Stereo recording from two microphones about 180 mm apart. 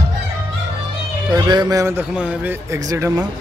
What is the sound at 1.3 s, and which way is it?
Speech, 25° right (ahead or behind).